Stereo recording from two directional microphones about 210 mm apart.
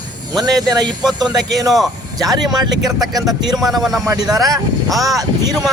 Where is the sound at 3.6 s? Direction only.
Centre (ahead or behind).